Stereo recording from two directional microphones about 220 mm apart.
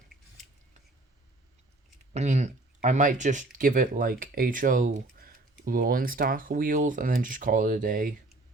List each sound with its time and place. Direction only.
2.1 s speech: 30° right (ahead or behind)